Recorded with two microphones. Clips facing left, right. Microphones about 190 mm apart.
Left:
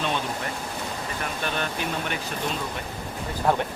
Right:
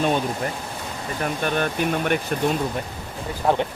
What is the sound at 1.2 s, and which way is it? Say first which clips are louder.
Speech: right 7 dB; 50° right (ahead or behind).